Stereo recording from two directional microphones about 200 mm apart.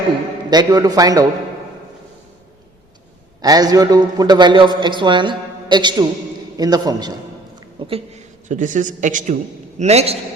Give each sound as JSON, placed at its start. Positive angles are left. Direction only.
{"t": 0.5, "sound": "a man's voice", "side_deg": -20}
{"t": 3.4, "sound": "a man's voice", "side_deg": -20}
{"t": 7.8, "sound": "a sound", "side_deg": -30}
{"t": 8.4, "sound": "a man's voice", "side_deg": -40}